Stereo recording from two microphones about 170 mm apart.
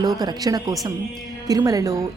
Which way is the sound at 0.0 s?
25° right (ahead or behind).